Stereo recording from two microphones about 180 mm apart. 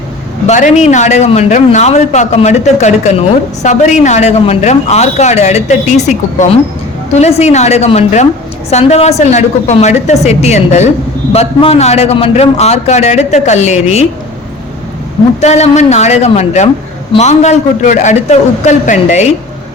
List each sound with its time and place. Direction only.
0.4 s speech: 40° left (ahead or behind)
15.4 s speech: 40° left (ahead or behind)